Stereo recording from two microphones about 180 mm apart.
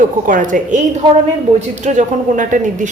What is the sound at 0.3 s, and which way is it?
A woman's voice, 45° right (ahead or behind).